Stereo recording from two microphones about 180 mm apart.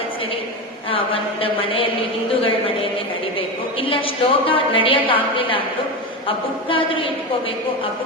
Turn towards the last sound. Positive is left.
turn(degrees=30)  # may be behind; listen again after turning